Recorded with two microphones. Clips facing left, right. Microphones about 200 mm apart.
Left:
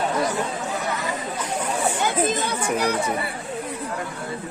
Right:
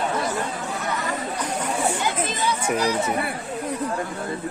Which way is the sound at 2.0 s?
55° left (ahead or behind).